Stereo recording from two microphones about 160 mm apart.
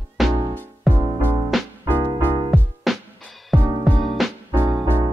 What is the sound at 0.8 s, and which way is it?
Music, 10° left (ahead or behind).